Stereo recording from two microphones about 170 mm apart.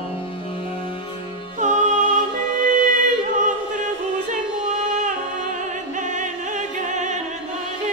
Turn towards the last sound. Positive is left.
turn(degrees=-45)  # may be behind; listen again after turning